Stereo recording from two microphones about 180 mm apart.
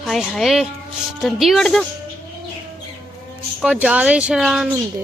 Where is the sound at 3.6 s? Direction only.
5° right (ahead or behind).